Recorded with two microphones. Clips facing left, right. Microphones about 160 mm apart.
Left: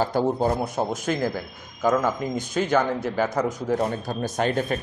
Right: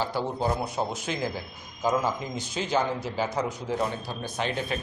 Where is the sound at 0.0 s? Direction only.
45° left (ahead or behind).